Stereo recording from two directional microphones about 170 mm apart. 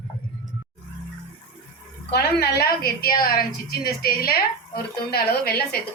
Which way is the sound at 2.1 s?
70° left (ahead or behind).